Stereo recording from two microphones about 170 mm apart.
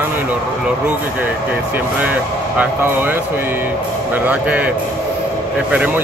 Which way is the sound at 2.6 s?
10° right (ahead or behind).